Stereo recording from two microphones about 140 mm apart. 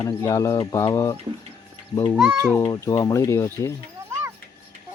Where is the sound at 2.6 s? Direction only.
20° left (ahead or behind).